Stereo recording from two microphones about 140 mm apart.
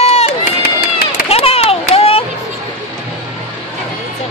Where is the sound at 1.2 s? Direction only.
45° left (ahead or behind).